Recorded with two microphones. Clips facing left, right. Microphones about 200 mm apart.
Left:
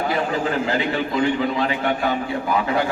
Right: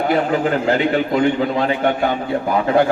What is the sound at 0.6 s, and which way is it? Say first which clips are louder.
A man's voice: right 5 dB; 45° right (ahead or behind).